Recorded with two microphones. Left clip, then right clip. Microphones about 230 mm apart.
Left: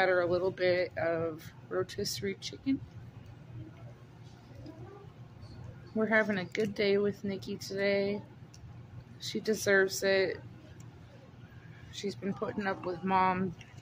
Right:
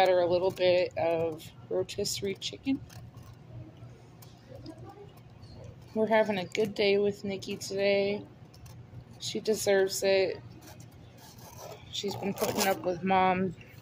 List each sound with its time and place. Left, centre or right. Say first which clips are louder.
0.0 s speech: right 4 dB; centre
6.0 s speech: right 3 dB; centre
9.2 s speech: right 3 dB; left
11.9 s speech: right 4 dB; centre
12.3 s speech: right 7 dB; centre